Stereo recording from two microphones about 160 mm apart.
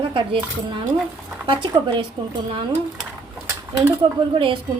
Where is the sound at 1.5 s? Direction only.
30° right (ahead or behind).